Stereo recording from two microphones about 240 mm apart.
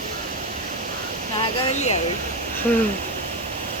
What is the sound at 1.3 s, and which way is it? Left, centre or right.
Speech, left.